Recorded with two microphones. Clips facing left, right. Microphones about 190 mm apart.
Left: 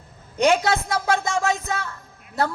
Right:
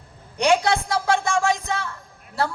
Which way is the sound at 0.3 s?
20° left (ahead or behind).